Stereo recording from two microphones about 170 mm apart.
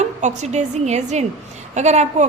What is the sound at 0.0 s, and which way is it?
A woman's voice, 45° right (ahead or behind).